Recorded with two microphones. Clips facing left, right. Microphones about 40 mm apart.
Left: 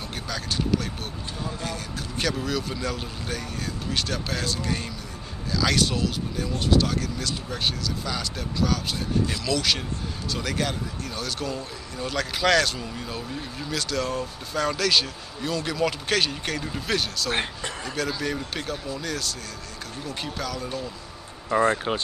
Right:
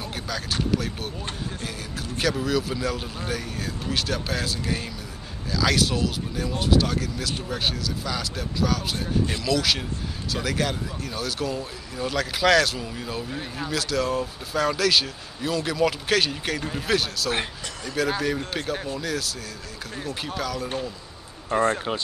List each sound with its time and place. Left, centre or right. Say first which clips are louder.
0.1 s speech: even; centre
20.3 s speech: right 4 dB; centre
21.5 s speech: left 1 dB; right
21.9 s speech: left 1 dB; centre